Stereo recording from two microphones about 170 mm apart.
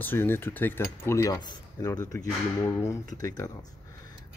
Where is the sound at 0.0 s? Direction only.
10° left (ahead or behind).